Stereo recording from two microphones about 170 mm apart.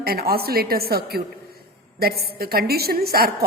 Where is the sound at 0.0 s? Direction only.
65° right (ahead or behind).